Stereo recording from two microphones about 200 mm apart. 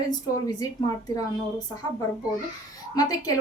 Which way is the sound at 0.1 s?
20° left (ahead or behind).